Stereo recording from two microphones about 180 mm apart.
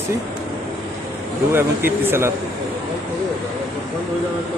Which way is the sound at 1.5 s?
10° right (ahead or behind).